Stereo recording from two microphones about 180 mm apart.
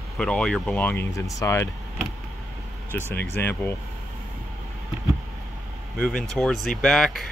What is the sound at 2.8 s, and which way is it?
Speech, 10° left (ahead or behind).